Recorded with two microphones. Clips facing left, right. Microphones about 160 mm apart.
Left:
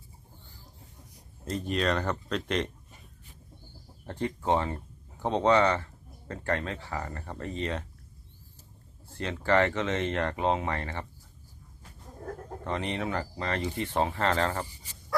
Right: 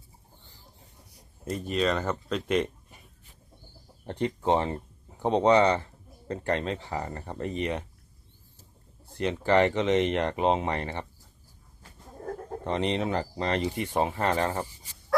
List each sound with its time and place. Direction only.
1.5 s speech: 5° right (ahead or behind)
4.0 s speech: 20° right (ahead or behind)
9.1 s speech: 15° right (ahead or behind)
12.6 s speech: 20° right (ahead or behind)